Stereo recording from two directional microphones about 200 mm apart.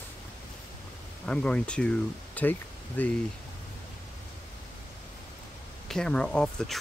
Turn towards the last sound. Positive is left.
turn(degrees=5)  # may be behind; listen again after turning